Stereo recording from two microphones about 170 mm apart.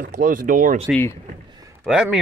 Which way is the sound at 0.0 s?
55° right (ahead or behind).